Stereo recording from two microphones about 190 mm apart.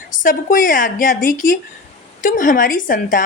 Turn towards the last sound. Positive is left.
turn(degrees=45)  # may be behind; listen again after turning